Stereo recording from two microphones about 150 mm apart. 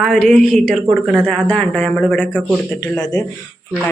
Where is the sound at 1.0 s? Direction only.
10° right (ahead or behind).